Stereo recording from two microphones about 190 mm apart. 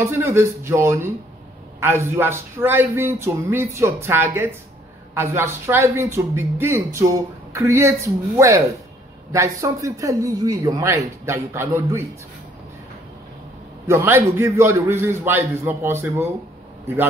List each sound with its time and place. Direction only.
0.0 s speech: 15° right (ahead or behind)
13.8 s speech: 15° right (ahead or behind)